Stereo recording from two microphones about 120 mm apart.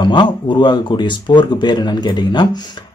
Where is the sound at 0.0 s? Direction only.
40° left (ahead or behind).